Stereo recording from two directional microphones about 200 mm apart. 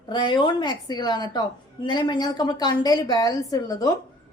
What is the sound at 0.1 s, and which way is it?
A woman's voice, 25° left (ahead or behind).